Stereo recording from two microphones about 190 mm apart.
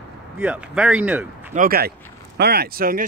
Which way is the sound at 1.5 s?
50° right (ahead or behind).